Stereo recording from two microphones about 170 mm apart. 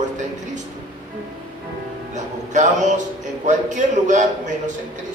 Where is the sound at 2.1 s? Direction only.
45° right (ahead or behind).